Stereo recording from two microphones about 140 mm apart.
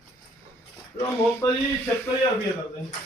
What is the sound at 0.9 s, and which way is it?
Speech, 20° left (ahead or behind).